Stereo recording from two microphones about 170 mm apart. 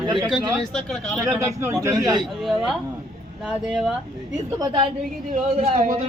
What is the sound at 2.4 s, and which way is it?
Speech, centre (ahead or behind).